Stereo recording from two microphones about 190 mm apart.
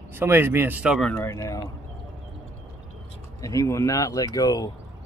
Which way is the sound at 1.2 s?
20° left (ahead or behind).